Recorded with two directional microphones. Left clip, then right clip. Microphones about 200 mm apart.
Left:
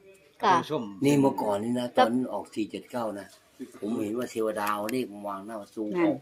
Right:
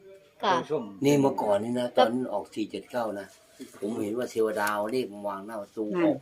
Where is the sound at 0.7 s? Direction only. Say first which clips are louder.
Right 1 dB; 60° left (ahead or behind).